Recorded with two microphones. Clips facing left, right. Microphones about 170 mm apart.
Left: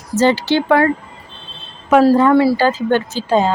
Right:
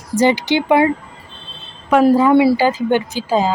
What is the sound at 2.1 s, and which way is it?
Speech, 5° right (ahead or behind).